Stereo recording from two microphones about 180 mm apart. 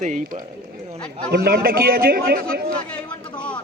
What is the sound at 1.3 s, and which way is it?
A man's voice, 55° right (ahead or behind).